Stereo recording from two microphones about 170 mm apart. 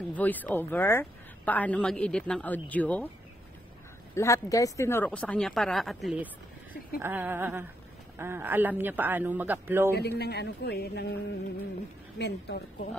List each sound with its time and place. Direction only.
0.1 s a woman's voice: 10° left (ahead or behind)
4.1 s a woman's voice: 15° left (ahead or behind); by 9.8 s 10° right (ahead or behind)
9.9 s a woman's voice: 70° left (ahead or behind)
12.2 s a woman's voice: 85° left